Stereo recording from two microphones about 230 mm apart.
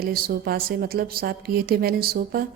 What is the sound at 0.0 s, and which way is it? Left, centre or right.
A woman's voice, right.